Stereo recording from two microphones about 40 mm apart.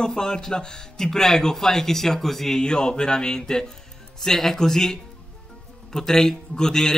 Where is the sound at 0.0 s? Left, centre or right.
Centre.